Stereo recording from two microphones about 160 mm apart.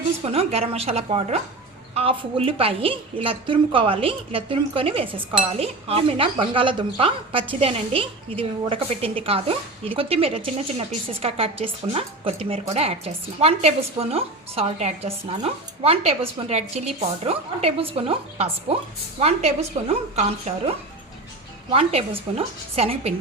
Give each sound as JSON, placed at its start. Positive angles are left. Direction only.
{"t": 0.3, "sound": "a woman's voice", "side_deg": -40}